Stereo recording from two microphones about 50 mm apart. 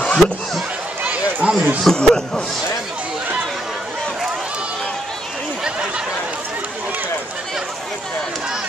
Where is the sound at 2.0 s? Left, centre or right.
Centre.